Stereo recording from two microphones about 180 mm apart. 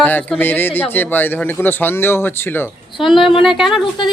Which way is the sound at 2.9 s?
25° left (ahead or behind).